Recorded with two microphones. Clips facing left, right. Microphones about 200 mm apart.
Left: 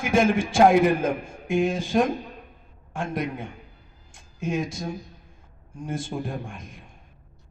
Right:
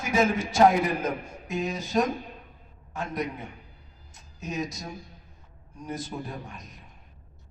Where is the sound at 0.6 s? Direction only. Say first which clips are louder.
Left 4 dB; 50° left (ahead or behind).